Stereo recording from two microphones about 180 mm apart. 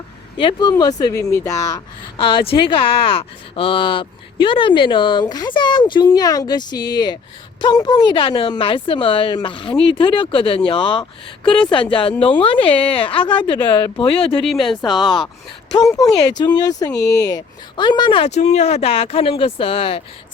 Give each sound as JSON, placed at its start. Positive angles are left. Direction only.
{"t": 0.3, "sound": "speech", "side_deg": 25}
{"t": 14.4, "sound": "speech", "side_deg": 0}
{"t": 15.9, "sound": "speech", "side_deg": 20}